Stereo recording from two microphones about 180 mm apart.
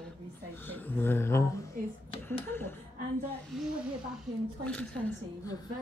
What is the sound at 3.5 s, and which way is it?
Speech, centre (ahead or behind).